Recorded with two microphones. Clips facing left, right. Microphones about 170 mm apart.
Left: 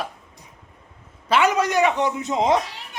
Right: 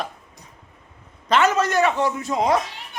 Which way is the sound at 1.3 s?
10° left (ahead or behind).